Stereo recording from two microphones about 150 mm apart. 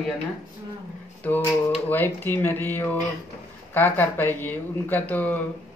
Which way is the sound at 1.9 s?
15° left (ahead or behind).